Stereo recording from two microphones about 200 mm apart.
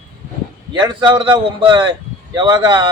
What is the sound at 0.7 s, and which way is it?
Speech, 20° right (ahead or behind).